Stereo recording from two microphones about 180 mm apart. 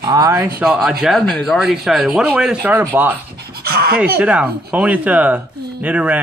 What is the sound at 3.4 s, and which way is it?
Dog, 60° right (ahead or behind).